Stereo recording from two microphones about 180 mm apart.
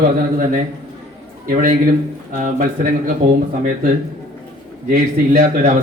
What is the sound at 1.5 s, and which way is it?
A man's voice, 50° right (ahead or behind).